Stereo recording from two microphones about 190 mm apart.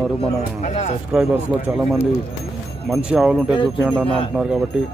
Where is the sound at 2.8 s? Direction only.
5° right (ahead or behind).